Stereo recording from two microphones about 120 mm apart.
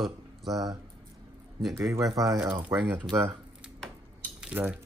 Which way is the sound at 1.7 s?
25° right (ahead or behind).